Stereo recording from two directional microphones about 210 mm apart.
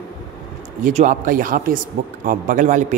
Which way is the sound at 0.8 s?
40° right (ahead or behind).